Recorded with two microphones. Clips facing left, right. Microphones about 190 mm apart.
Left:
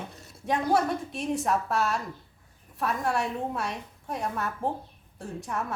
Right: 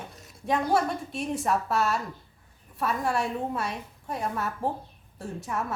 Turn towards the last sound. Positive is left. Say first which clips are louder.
# right 1 dB
turn(degrees=0)  # may be behind; listen again after turning